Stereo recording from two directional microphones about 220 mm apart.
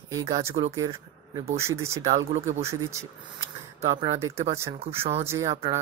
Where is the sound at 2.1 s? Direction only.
30° right (ahead or behind).